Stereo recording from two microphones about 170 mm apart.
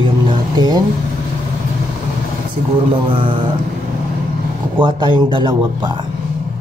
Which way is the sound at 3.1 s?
30° right (ahead or behind).